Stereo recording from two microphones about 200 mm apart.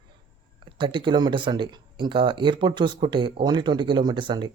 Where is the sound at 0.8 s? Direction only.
25° right (ahead or behind).